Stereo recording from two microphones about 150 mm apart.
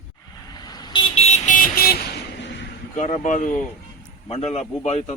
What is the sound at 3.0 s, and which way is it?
Speech, 50° left (ahead or behind).